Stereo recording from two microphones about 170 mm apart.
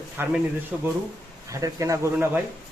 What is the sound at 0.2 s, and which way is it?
Speech, 15° right (ahead or behind).